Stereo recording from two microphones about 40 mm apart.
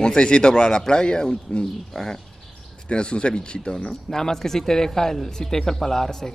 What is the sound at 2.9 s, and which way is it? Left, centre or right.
Speech, left.